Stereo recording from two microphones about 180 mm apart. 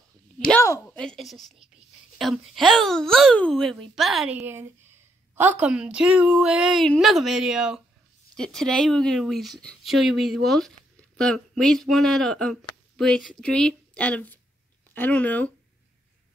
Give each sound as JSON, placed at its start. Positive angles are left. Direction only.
{"t": 0.5, "sound": "a sound", "side_deg": 15}
{"t": 0.9, "sound": "speech", "side_deg": 0}
{"t": 4.4, "sound": "speech", "side_deg": -10}